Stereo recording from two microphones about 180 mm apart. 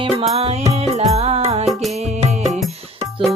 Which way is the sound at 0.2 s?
35° right (ahead or behind).